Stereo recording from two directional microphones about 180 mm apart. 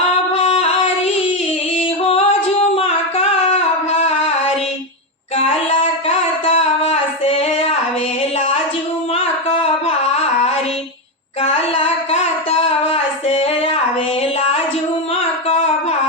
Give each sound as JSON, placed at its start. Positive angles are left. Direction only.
{"t": 0.4, "sound": "a sound", "side_deg": 35}
{"t": 1.7, "sound": "music", "side_deg": 35}
{"t": 2.7, "sound": "singing", "side_deg": 35}
{"t": 4.0, "sound": "music", "side_deg": 35}
{"t": 6.1, "sound": "singing", "side_deg": 35}
{"t": 9.1, "sound": "singing", "side_deg": 35}
{"t": 11.4, "sound": "child singing", "side_deg": 35}
{"t": 15.4, "sound": "a sound", "side_deg": 35}